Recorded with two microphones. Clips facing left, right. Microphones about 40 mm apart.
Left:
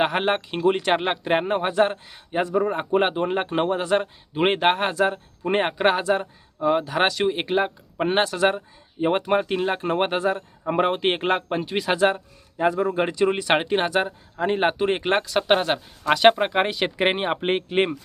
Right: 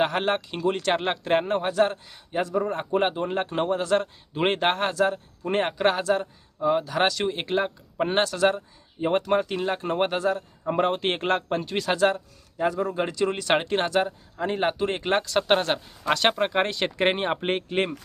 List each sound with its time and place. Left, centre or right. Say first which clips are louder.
0.0 s a man's voice: left 2 dB; left